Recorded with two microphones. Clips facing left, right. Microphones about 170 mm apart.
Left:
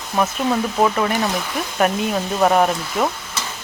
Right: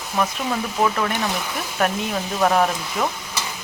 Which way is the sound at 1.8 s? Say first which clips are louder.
Left 3 dB; 5° left (ahead or behind).